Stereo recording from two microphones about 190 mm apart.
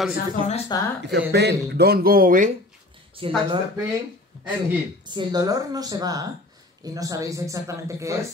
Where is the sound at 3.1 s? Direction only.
30° right (ahead or behind).